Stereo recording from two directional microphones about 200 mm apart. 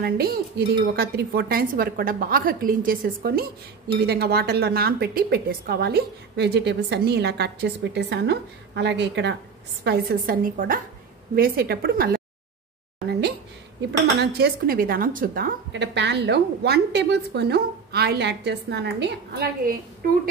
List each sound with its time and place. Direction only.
0.0 s speech: 50° right (ahead or behind)
9.8 s speech: 50° right (ahead or behind)
13.7 s speech: 55° right (ahead or behind)